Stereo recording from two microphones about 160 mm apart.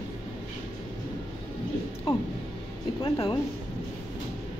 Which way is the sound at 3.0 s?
30° left (ahead or behind).